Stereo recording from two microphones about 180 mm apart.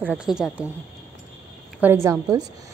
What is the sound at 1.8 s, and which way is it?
Speech, 15° right (ahead or behind).